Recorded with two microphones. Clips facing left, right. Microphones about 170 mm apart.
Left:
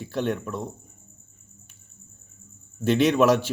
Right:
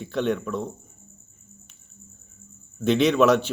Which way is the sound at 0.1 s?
40° left (ahead or behind).